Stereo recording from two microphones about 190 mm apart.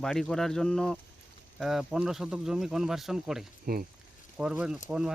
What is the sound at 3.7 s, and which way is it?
Speech, 55° right (ahead or behind).